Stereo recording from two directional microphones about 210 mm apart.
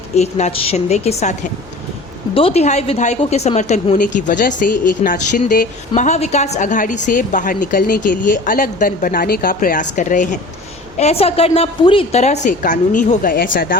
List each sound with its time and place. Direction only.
0.2 s a woman's voice: 30° left (ahead or behind)